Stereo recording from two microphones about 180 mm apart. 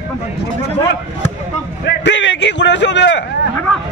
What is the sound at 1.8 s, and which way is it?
A man's voice, 70° left (ahead or behind).